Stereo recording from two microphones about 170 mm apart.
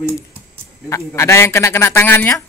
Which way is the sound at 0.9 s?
15° left (ahead or behind).